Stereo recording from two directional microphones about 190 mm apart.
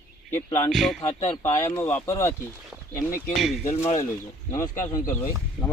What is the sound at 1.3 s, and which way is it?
Speech, 15° left (ahead or behind).